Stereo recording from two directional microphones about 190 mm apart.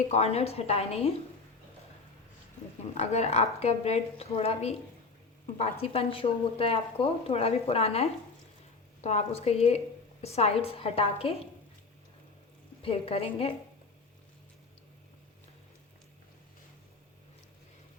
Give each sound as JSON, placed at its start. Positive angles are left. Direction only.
{"t": 0.1, "sound": "speech", "side_deg": 35}
{"t": 3.0, "sound": "speech", "side_deg": 35}
{"t": 12.8, "sound": "a woman's voice", "side_deg": 30}